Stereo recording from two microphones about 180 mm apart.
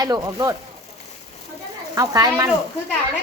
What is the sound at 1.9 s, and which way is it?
Speech, 20° right (ahead or behind).